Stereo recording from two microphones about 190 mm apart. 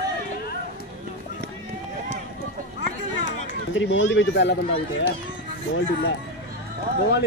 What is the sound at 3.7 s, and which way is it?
Speech, 80° left.